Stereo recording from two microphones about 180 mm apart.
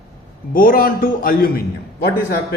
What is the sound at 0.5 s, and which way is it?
A man's voice, 50° left (ahead or behind).